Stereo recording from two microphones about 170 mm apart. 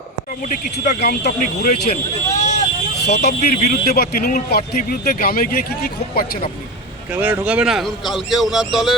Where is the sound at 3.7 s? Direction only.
65° left (ahead or behind).